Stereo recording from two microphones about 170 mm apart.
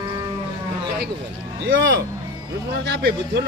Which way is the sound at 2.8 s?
90° right.